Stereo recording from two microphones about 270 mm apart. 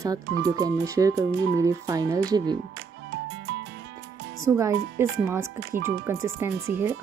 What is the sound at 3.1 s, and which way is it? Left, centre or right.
Music, right.